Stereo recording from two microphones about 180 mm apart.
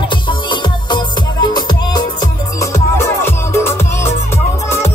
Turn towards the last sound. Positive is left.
turn(degrees=15)  # may be behind; listen again after turning